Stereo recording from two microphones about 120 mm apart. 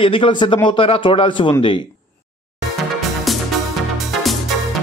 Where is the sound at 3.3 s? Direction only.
Centre (ahead or behind).